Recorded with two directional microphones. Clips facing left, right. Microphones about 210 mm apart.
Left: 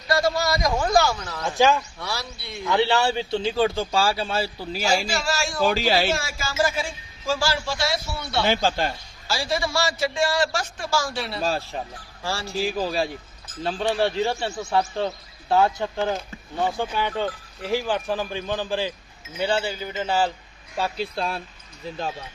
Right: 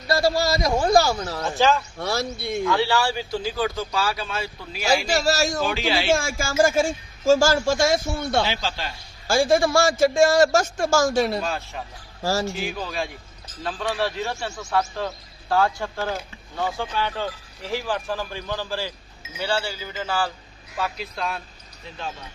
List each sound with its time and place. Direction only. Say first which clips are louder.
0.1 s speech: right 1 dB; 30° right (ahead or behind)
1.5 s speech: left 1 dB; 15° left (ahead or behind)
2.0 s a man's voice: right 7 dB; 50° right (ahead or behind)
2.6 s speech: left 2 dB; 20° left (ahead or behind)
5.0 s speech: right 5 dB; 40° right (ahead or behind)
5.6 s speech: left 3 dB; 40° left (ahead or behind)
6.1 s a man's voice: right 5 dB; 50° right (ahead or behind)
8.4 s speech: left 6 dB; 50° left (ahead or behind)
9.2 s a man's voice: right 8 dB; 50° right (ahead or behind)
11.4 s speech: left 3 dB; 35° left (ahead or behind)
12.2 s speech: right 6 dB; 40° right (ahead or behind)
12.5 s speech: left 4 dB; 35° left (ahead or behind)